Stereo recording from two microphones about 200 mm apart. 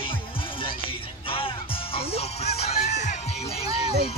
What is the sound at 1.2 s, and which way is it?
Music, 25° left (ahead or behind).